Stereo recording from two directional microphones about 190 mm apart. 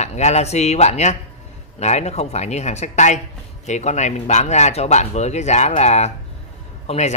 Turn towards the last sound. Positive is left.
turn(degrees=35)  # may be behind; listen again after turning